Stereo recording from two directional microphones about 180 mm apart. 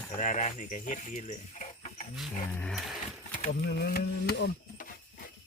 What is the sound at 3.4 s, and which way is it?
Speech, 60° left (ahead or behind).